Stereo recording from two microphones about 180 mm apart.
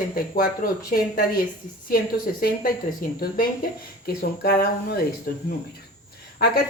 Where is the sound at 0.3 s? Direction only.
55° left (ahead or behind).